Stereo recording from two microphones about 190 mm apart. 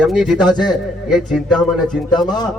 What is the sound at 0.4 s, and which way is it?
Speech, 20° left (ahead or behind).